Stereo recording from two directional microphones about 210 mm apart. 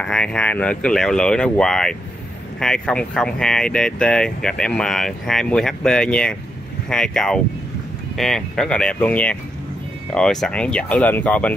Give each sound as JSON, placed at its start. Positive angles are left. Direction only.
{"t": 0.0, "sound": "speech", "side_deg": 5}